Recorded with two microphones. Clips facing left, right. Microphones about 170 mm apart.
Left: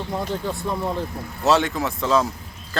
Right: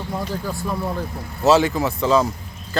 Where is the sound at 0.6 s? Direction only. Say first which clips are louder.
Even; 20° left (ahead or behind).